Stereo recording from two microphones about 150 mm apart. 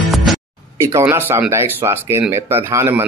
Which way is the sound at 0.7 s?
20° right (ahead or behind).